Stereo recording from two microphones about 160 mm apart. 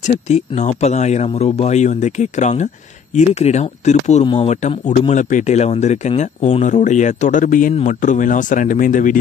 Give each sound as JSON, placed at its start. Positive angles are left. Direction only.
{"t": 0.0, "sound": "speech", "side_deg": 45}
{"t": 4.2, "sound": "speech", "side_deg": 30}
{"t": 4.5, "sound": "speech", "side_deg": 45}